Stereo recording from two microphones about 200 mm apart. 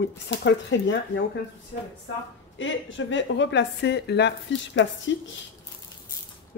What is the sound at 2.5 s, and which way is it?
Speech, 70° left (ahead or behind).